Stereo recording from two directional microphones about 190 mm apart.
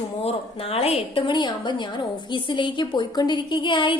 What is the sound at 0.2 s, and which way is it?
A woman's voice, 30° left (ahead or behind).